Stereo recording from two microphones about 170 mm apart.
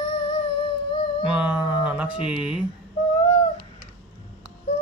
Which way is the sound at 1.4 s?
5° right (ahead or behind).